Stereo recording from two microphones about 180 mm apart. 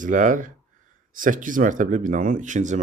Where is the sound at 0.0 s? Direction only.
45° right (ahead or behind).